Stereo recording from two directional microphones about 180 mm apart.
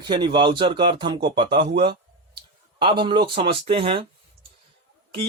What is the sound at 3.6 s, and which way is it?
Speech, 30° right (ahead or behind).